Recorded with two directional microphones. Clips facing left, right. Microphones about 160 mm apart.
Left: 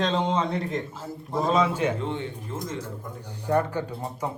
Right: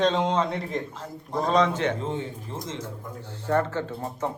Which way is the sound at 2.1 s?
40° right (ahead or behind).